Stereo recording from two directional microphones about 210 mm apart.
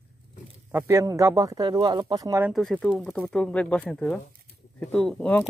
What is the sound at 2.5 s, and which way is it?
Speech, centre (ahead or behind).